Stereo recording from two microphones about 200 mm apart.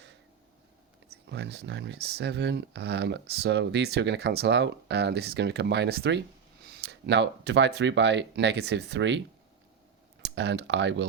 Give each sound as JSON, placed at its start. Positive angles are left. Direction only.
{"t": 1.1, "sound": "speech", "side_deg": -60}
{"t": 10.3, "sound": "speech", "side_deg": -60}